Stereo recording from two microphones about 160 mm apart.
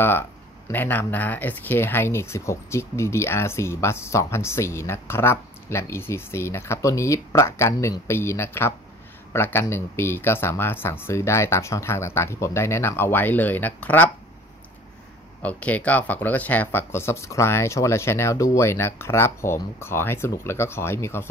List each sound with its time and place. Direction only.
0.7 s speech: 10° left (ahead or behind)
15.4 s speech: 10° left (ahead or behind)